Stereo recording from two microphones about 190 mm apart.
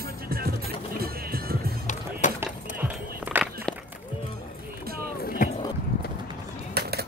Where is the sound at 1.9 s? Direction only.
40° left (ahead or behind).